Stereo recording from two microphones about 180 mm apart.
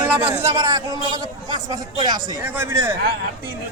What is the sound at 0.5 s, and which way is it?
A man's voice, 20° right (ahead or behind).